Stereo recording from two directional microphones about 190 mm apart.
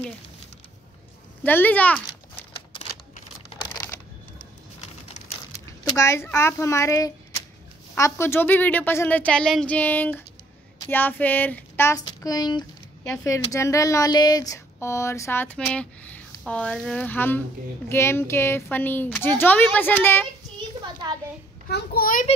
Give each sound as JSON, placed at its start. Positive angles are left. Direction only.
{"t": 1.4, "sound": "speech", "side_deg": 10}
{"t": 3.7, "sound": "a sound", "side_deg": 15}
{"t": 5.5, "sound": "speech", "side_deg": 15}
{"t": 21.6, "sound": "a child's voice", "side_deg": 55}